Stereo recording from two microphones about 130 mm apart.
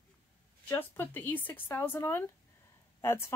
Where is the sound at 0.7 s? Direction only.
20° left (ahead or behind).